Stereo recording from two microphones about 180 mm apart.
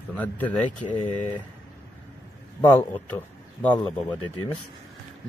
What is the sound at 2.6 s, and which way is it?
Speech, 10° left (ahead or behind).